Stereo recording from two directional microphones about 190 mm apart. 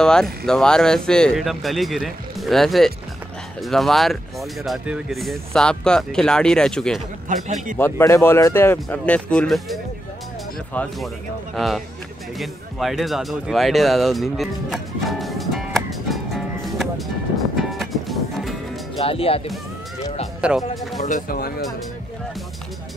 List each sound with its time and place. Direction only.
0.0 s speech: 5° left (ahead or behind)
7.3 s a man's voice: 45° right (ahead or behind)
7.7 s speech: 15° left (ahead or behind)
17.4 s music: centre (ahead or behind)
18.9 s speech: 30° left (ahead or behind)
20.3 s speech: 5° right (ahead or behind)
21.0 s speech: 45° left (ahead or behind)